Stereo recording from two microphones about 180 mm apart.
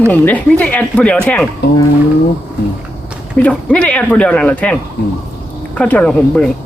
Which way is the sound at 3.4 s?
5° left (ahead or behind).